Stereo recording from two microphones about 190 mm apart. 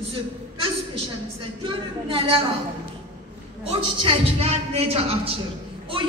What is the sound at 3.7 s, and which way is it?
A man's voice, 30° right (ahead or behind).